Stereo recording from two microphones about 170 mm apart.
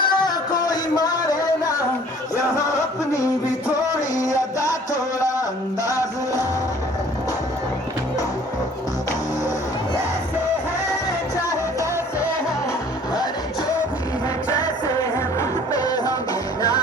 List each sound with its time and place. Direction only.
0.0 s music: 25° left (ahead or behind)
2.6 s a sound: 20° left (ahead or behind)
4.2 s music: 20° left (ahead or behind)
11.3 s music: 20° left (ahead or behind)
14.5 s music: 20° left (ahead or behind)